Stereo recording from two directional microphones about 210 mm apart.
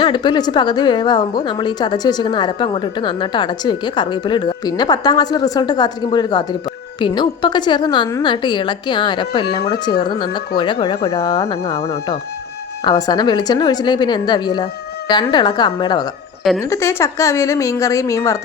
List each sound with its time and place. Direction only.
0.0 s a woman's voice: 20° left (ahead or behind)